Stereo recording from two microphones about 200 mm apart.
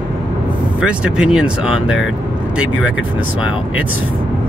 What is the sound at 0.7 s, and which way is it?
Speech, 5° right (ahead or behind).